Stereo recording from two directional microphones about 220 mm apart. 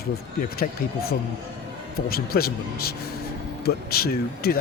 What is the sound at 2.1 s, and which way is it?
Speech, 45° left (ahead or behind).